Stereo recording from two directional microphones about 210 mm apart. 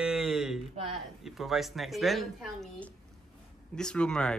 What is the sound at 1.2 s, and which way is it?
A man's voice, centre (ahead or behind).